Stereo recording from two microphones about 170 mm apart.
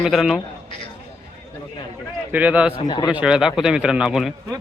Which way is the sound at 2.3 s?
10° right (ahead or behind).